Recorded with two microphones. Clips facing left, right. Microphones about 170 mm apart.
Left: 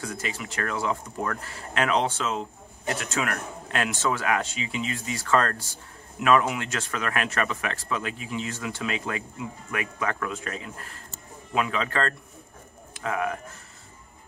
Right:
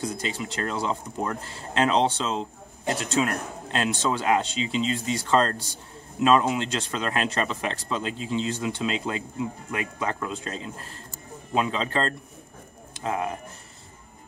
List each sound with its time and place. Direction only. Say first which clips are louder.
0.0 s speech: right 3 dB; 20° right (ahead or behind)